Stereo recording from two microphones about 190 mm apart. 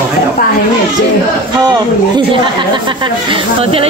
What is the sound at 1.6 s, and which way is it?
Speech, 20° right (ahead or behind).